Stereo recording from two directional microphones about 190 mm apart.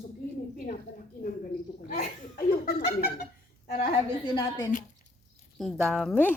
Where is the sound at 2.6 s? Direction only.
50° left (ahead or behind).